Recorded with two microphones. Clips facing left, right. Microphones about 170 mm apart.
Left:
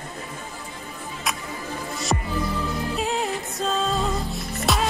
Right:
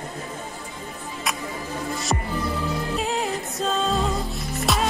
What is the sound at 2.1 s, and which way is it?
Music, centre (ahead or behind).